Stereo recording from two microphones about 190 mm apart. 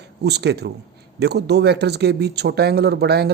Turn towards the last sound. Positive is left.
turn(degrees=-60)  # may be behind; listen again after turning